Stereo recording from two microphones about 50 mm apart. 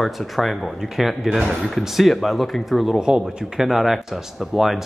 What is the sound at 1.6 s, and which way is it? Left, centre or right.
Speech, centre.